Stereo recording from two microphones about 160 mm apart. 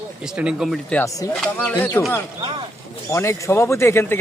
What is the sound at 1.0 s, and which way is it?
Speech, 20° left (ahead or behind).